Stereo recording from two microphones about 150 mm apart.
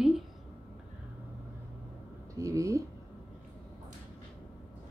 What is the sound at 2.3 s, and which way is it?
Speech, 20° right (ahead or behind).